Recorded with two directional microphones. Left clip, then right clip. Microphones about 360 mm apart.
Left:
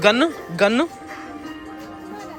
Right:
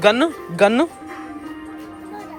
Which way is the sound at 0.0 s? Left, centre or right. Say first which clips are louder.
Right 1 dB; centre.